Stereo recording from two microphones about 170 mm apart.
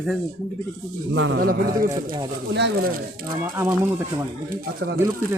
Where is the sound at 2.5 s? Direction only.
90° right.